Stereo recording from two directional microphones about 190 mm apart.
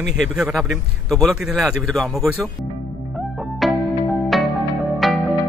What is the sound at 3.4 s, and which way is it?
Music, centre (ahead or behind).